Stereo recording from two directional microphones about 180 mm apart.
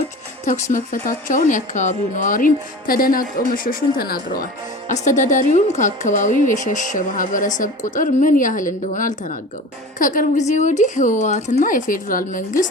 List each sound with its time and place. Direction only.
0.4 s a woman's voice: 45° left (ahead or behind)
4.9 s a woman's voice: 40° left (ahead or behind)